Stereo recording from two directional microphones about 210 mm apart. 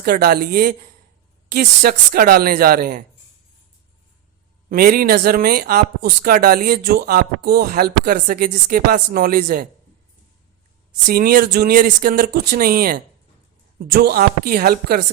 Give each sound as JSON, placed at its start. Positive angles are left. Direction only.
{"t": 0.0, "sound": "speech", "side_deg": -45}
{"t": 4.7, "sound": "speech", "side_deg": -45}
{"t": 11.1, "sound": "speech", "side_deg": -45}